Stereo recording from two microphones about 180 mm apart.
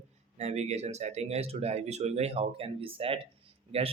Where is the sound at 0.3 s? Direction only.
35° right (ahead or behind).